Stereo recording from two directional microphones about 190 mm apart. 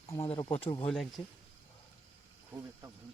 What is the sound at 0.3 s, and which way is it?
Speech, 25° left (ahead or behind).